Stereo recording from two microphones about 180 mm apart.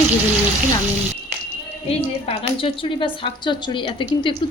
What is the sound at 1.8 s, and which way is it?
A woman's voice, 30° left (ahead or behind).